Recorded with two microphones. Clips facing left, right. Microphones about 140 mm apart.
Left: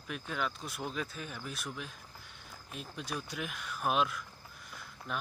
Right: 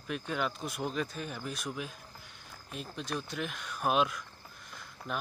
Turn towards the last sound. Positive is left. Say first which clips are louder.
# right 2 dB
turn(degrees=0)  # may be behind; listen again after turning